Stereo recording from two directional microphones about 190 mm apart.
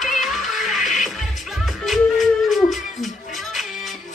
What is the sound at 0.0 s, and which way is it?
Music, centre (ahead or behind).